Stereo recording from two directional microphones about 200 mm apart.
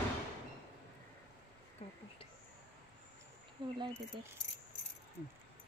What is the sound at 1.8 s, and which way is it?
Speech, 30° left (ahead or behind).